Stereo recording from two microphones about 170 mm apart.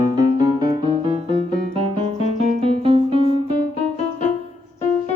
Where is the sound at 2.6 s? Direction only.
35° right (ahead or behind).